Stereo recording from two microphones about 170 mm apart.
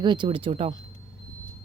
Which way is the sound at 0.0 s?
25° right (ahead or behind).